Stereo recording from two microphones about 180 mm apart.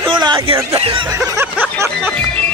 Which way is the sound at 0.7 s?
30° right (ahead or behind).